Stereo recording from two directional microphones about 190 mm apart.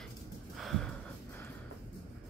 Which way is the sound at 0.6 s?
Centre (ahead or behind).